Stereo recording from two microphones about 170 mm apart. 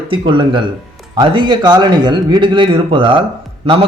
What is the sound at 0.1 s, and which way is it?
A man's voice, 30° right (ahead or behind).